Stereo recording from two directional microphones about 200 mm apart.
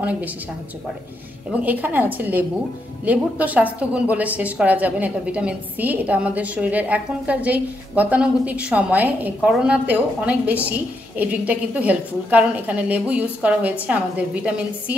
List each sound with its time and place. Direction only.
1.5 s a woman's voice: 10° right (ahead or behind)